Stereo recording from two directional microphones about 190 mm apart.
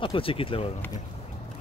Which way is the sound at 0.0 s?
30° left (ahead or behind).